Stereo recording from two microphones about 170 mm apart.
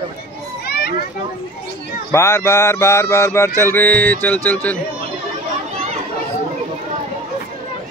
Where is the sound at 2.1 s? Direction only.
15° left (ahead or behind).